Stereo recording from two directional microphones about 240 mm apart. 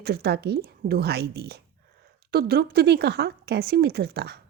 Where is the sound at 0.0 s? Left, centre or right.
Right.